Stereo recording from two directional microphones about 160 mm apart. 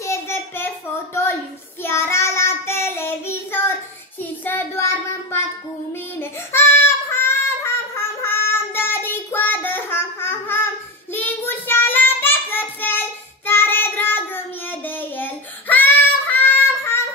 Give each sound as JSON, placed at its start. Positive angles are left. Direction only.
{"t": 0.0, "sound": "child singing", "side_deg": 15}
{"t": 1.8, "sound": "child singing", "side_deg": 15}